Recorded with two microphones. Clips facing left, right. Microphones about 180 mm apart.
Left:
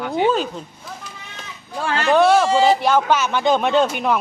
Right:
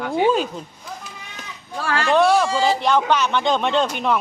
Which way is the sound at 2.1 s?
Centre (ahead or behind).